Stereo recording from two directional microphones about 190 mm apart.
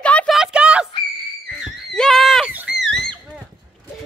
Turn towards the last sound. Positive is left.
turn(degrees=0)  # may be behind; listen again after turning